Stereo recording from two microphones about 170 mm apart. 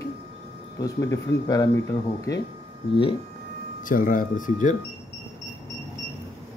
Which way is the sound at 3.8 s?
55° left (ahead or behind).